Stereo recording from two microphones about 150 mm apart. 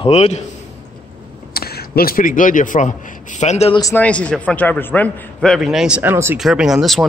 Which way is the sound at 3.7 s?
25° left (ahead or behind).